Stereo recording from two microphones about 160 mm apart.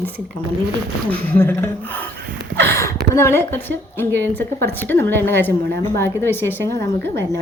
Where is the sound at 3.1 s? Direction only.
15° left (ahead or behind).